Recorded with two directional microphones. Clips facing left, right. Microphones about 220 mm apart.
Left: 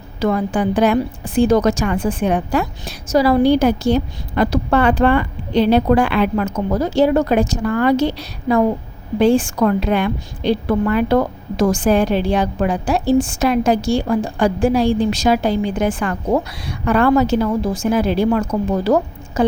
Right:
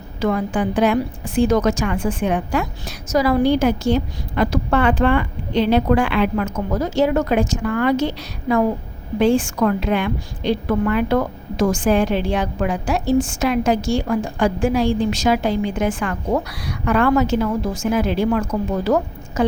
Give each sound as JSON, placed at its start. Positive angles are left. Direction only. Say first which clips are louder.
{"t": 0.2, "sound": "a woman's voice", "louder": "left 2 dB", "side_deg": 40}